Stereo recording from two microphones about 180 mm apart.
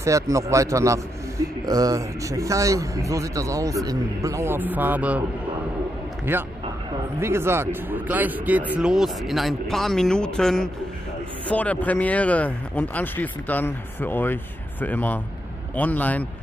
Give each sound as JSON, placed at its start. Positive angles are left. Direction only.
{"t": 0.0, "sound": "a man's voice", "side_deg": -15}
{"t": 6.3, "sound": "a man's voice", "side_deg": -10}